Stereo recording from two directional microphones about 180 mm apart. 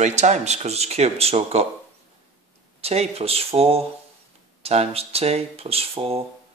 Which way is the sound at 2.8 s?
35° right (ahead or behind).